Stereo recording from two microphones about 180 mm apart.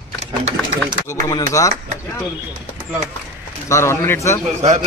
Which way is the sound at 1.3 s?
15° left (ahead or behind).